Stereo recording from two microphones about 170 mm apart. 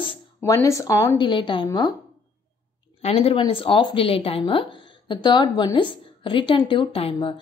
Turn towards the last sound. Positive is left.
turn(degrees=35)  # may be behind; listen again after turning